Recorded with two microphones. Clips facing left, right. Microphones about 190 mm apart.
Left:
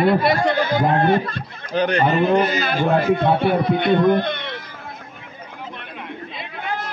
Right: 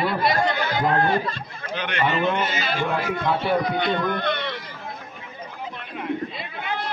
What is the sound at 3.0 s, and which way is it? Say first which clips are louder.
Speech: left 7 dB; 55° left (ahead or behind).